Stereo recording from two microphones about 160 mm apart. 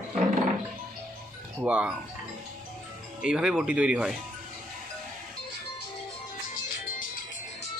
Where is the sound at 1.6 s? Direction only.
5° right (ahead or behind).